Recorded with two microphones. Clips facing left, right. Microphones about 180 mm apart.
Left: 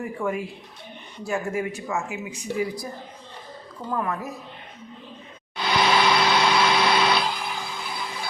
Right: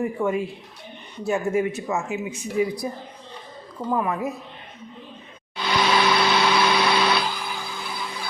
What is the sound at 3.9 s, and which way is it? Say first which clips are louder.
Speech: right 3 dB; 15° right (ahead or behind).